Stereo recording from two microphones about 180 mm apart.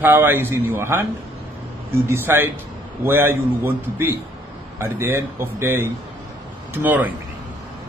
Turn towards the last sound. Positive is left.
turn(degrees=-10)  # may be behind; listen again after turning